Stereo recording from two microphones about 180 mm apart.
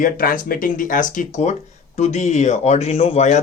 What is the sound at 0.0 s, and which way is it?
Speech, 50° left (ahead or behind).